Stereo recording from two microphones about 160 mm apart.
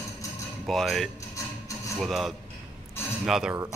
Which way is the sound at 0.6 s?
Centre (ahead or behind).